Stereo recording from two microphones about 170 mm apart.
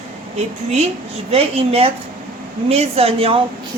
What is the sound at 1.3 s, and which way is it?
Speech, 35° right (ahead or behind).